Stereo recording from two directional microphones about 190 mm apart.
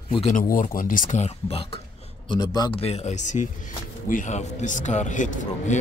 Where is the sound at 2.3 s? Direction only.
20° left (ahead or behind); by 5.3 s 40° left (ahead or behind).